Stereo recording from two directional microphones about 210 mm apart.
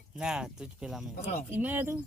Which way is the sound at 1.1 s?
35° left (ahead or behind).